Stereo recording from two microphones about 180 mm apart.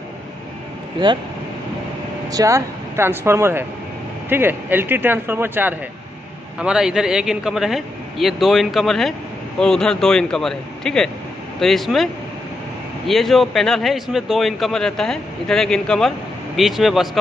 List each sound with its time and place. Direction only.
1.0 s speech: 25° right (ahead or behind)
2.2 s speech: 20° right (ahead or behind); by 17.2 s centre (ahead or behind)